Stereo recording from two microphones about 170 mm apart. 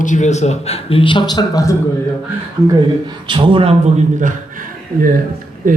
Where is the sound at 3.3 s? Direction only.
30° right (ahead or behind); by 4.3 s 45° right (ahead or behind).